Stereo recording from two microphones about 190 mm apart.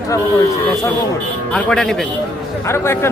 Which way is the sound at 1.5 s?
5° left (ahead or behind).